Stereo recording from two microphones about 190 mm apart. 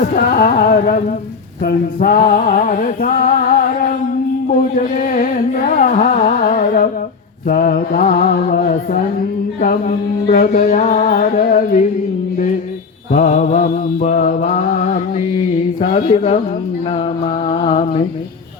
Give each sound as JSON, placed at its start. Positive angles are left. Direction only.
{"t": 0.2, "sound": "mantra", "side_deg": 50}
{"t": 1.6, "sound": "speech", "side_deg": 40}
{"t": 4.4, "sound": "carnatic music", "side_deg": 45}
{"t": 7.4, "sound": "music", "side_deg": 45}
{"t": 9.6, "sound": "mantra", "side_deg": 45}
{"t": 13.1, "sound": "mantra", "side_deg": 45}
{"t": 15.4, "sound": "speech", "side_deg": 35}
{"t": 16.9, "sound": "mantra", "side_deg": 30}